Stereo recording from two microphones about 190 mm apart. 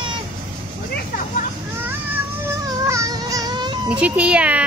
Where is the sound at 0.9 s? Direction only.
45° left (ahead or behind).